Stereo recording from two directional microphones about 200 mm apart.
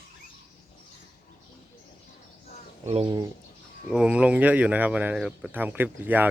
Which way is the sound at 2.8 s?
25° right (ahead or behind).